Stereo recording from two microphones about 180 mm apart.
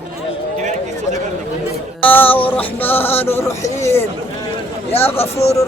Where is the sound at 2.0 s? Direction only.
10° left (ahead or behind).